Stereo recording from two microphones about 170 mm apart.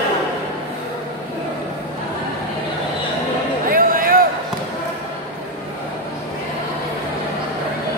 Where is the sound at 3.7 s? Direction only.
55° right (ahead or behind).